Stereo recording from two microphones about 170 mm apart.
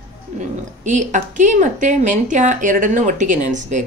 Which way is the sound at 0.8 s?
45° right (ahead or behind).